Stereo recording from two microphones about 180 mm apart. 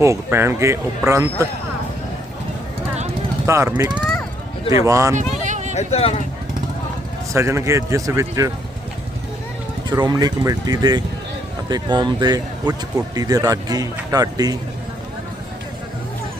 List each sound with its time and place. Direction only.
0.0 s speech: 15° right (ahead or behind)
3.4 s speech: 15° right (ahead or behind)
5.1 s a sound: 45° right (ahead or behind)
5.7 s speech: 35° left (ahead or behind)
7.3 s speech: 15° right (ahead or behind)
9.9 s speech: 20° right (ahead or behind)